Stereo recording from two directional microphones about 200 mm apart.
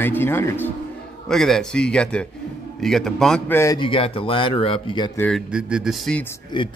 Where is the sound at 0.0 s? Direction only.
10° left (ahead or behind).